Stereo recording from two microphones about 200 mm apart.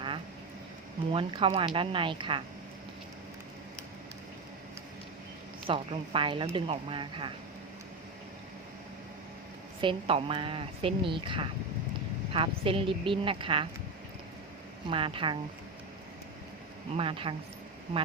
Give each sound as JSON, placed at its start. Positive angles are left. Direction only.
{"t": 1.1, "sound": "speech", "side_deg": -25}
{"t": 5.6, "sound": "speech", "side_deg": -25}
{"t": 9.8, "sound": "speech", "side_deg": -25}
{"t": 14.8, "sound": "speech", "side_deg": -25}
{"t": 17.0, "sound": "speech", "side_deg": -25}